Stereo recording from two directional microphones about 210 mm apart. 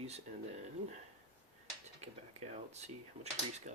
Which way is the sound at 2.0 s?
30° right (ahead or behind).